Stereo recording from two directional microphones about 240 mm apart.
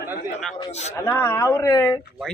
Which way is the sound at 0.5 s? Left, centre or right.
Left.